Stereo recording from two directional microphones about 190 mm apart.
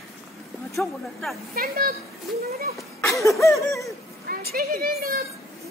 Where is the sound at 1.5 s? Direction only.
50° right (ahead or behind).